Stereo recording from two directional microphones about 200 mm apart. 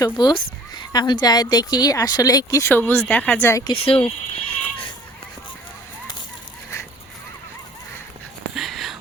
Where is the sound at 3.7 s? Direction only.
25° left (ahead or behind).